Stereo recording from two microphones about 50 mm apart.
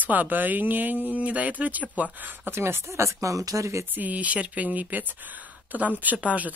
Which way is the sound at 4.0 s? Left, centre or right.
Right.